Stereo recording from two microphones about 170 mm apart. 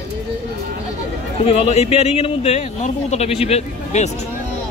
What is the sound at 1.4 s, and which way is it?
A man's voice, 35° left (ahead or behind).